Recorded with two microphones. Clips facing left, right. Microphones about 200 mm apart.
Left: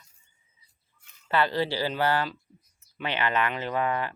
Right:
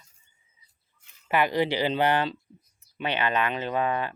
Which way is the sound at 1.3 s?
15° right (ahead or behind).